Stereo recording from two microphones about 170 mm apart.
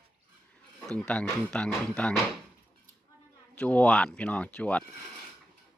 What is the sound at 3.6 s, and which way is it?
Speech, 5° left (ahead or behind).